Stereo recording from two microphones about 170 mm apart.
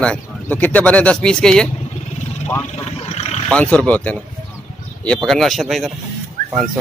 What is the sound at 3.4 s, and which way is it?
Speech, 5° left (ahead or behind).